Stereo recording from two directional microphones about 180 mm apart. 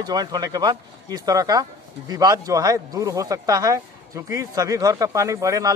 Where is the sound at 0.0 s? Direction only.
20° right (ahead or behind).